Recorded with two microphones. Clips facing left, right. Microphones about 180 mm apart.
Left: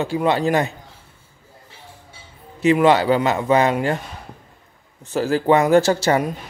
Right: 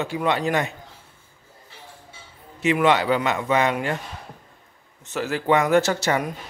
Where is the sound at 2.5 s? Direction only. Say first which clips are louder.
Left 4 dB; 35° left (ahead or behind).